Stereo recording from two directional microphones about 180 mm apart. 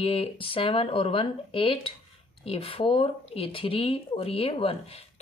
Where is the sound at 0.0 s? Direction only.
30° left (ahead or behind).